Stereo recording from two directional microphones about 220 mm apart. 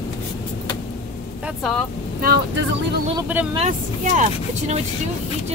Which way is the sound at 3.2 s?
10° right (ahead or behind).